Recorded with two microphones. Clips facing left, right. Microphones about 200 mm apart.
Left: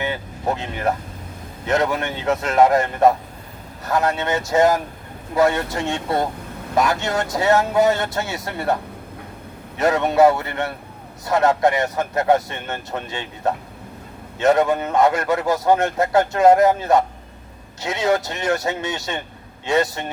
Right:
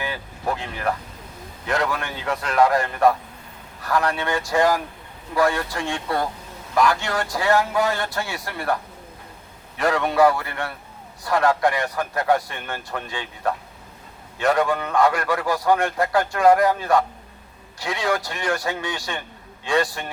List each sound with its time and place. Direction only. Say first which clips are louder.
0.0 s a man's voice: left 4 dB; 20° left (ahead or behind)